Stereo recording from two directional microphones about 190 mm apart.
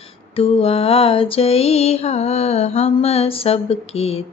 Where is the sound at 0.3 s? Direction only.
30° left (ahead or behind).